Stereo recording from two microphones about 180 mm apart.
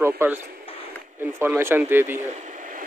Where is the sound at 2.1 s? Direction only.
40° right (ahead or behind).